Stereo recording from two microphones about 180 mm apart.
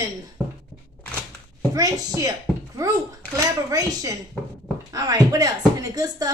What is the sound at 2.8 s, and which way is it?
A woman's voice, 20° right (ahead or behind).